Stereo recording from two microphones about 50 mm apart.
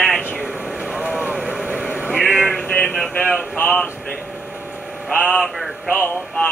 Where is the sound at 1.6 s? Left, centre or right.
Centre.